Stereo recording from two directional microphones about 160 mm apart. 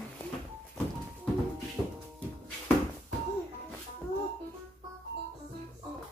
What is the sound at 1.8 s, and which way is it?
Music, 15° left (ahead or behind).